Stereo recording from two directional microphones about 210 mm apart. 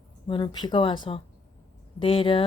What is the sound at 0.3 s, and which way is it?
Speech, 20° left (ahead or behind).